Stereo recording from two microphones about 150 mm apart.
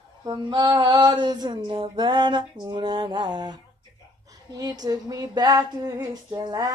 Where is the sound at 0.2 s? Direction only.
25° right (ahead or behind).